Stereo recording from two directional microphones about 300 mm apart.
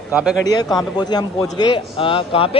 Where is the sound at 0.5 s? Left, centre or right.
Centre.